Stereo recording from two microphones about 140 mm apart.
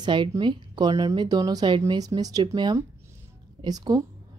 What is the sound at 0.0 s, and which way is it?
A woman's voice, 35° right (ahead or behind).